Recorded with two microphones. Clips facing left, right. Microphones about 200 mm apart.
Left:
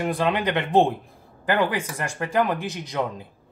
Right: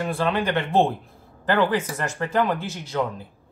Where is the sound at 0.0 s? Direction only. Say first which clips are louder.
Left 1 dB; 15° left (ahead or behind).